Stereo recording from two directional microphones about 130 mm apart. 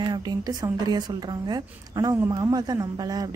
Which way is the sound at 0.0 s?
30° right (ahead or behind).